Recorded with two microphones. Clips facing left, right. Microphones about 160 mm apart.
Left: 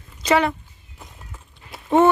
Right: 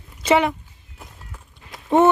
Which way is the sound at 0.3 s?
20° right (ahead or behind).